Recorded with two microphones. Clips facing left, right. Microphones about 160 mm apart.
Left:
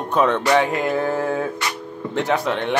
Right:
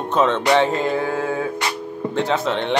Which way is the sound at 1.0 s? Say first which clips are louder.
Left 1 dB; 15° right (ahead or behind).